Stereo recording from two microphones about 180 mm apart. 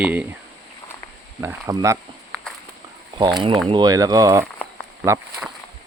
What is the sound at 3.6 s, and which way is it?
Speech, 25° right (ahead or behind).